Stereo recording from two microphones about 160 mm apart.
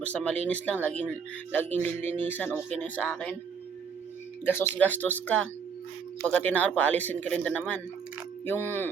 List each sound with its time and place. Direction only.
0.0 s speech: 10° left (ahead or behind)
4.4 s speech: 15° left (ahead or behind)
6.2 s speech: 10° left (ahead or behind)